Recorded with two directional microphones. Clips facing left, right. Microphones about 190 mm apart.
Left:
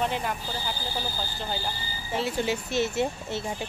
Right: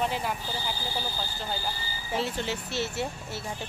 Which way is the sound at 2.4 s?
15° left (ahead or behind).